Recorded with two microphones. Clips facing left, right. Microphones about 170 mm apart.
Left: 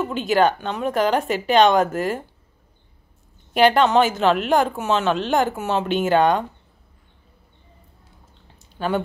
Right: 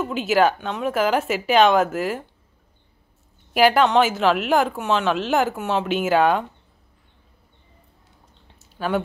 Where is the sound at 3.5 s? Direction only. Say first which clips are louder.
Left 1 dB; 5° right (ahead or behind).